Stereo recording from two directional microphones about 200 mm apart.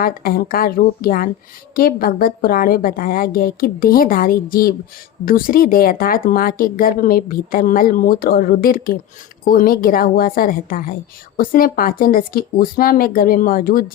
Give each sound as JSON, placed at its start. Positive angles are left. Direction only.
{"t": 0.0, "sound": "speech", "side_deg": 45}